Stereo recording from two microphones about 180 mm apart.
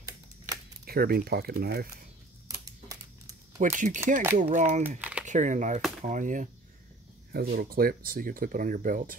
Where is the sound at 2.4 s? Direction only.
20° right (ahead or behind).